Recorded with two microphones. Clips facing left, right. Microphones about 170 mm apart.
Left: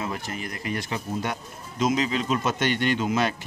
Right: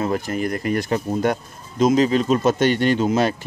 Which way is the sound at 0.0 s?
45° right (ahead or behind).